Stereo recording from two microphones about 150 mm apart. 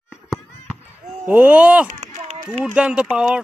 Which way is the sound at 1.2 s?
10° right (ahead or behind).